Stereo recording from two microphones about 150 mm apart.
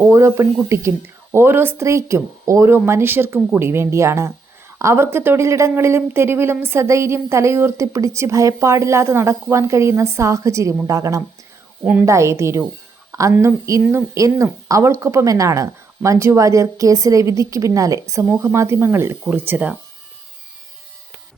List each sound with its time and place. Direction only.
0.0 s speech: 20° right (ahead or behind)
13.1 s a sound: 20° right (ahead or behind)
13.3 s speech: 20° right (ahead or behind)